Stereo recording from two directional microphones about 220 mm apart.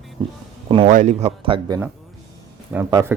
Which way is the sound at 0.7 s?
25° right (ahead or behind).